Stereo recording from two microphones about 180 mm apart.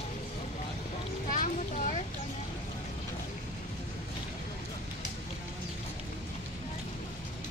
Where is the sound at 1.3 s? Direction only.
45° left (ahead or behind).